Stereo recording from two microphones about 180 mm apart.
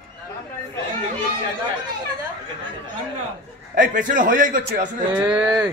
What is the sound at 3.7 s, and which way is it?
A man's voice, 45° right (ahead or behind).